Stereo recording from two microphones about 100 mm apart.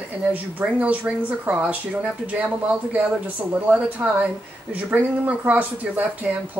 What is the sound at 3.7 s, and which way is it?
Speech, 15° right (ahead or behind).